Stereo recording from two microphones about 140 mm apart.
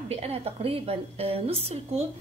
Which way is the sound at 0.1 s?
45° right (ahead or behind).